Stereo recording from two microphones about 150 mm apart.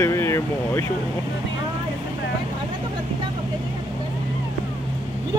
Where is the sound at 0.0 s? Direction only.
15° left (ahead or behind).